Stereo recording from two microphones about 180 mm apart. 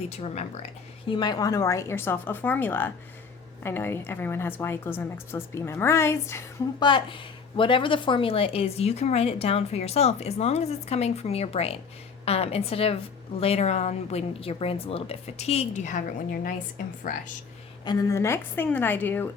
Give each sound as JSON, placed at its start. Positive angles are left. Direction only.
{"t": 0.1, "sound": "speech", "side_deg": 35}
{"t": 1.0, "sound": "a woman's voice", "side_deg": 25}
{"t": 6.8, "sound": "speech", "side_deg": 25}
{"t": 17.8, "sound": "a woman's voice", "side_deg": 15}